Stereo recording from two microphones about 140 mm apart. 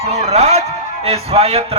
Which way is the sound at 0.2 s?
50° right (ahead or behind).